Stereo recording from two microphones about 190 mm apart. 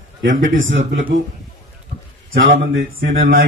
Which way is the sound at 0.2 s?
85° right.